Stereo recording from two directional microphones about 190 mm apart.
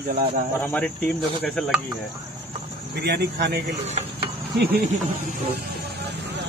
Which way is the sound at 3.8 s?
35° right (ahead or behind).